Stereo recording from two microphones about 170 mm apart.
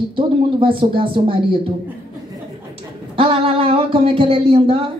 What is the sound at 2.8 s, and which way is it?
Speech, 30° right (ahead or behind).